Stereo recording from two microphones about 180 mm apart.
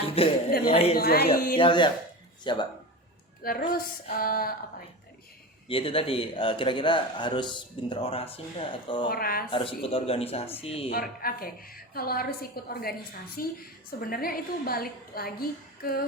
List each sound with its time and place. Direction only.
0.0 s a sound: 30° left (ahead or behind)
0.7 s speech: 35° left (ahead or behind)
0.9 s a woman's voice: 60° left (ahead or behind)
1.5 s speech: 25° left (ahead or behind)
3.7 s a woman's voice: 55° left (ahead or behind)
5.6 s speech: 30° left (ahead or behind)
9.0 s a woman's voice: 55° left (ahead or behind)
9.5 s speech: 30° left (ahead or behind)
10.9 s a woman's voice: 55° left (ahead or behind)